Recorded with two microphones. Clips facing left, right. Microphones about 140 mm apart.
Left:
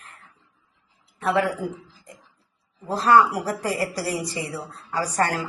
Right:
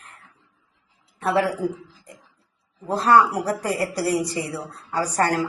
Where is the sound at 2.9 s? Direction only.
35° right (ahead or behind).